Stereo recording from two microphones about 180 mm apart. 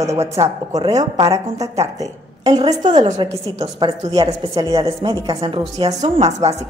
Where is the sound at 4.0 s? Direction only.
20° right (ahead or behind).